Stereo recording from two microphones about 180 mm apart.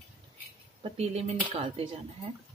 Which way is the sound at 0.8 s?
35° right (ahead or behind).